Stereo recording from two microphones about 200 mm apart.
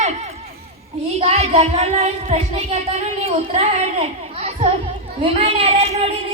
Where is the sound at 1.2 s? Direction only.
30° right (ahead or behind).